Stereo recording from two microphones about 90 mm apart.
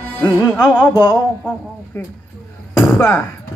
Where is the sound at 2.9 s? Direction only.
25° left (ahead or behind).